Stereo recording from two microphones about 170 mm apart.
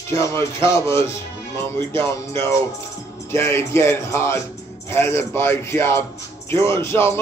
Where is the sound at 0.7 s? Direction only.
15° left (ahead or behind).